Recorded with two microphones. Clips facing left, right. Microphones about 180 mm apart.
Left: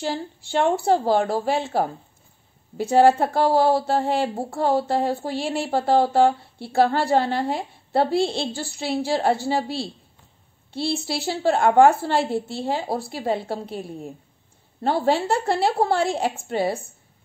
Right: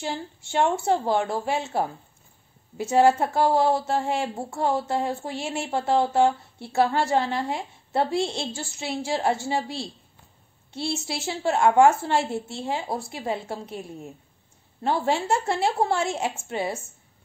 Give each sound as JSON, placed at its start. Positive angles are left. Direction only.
{"t": 0.0, "sound": "a woman's voice", "side_deg": 35}
{"t": 2.8, "sound": "a woman's voice", "side_deg": 30}